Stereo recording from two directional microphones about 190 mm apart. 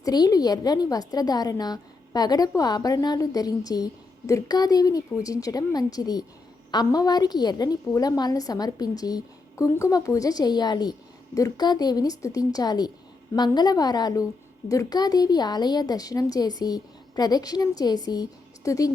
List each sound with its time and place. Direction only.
0.0 s a woman's voice: 20° left (ahead or behind)